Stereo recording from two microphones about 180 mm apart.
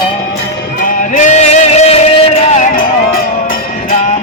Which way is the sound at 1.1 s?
40° left (ahead or behind).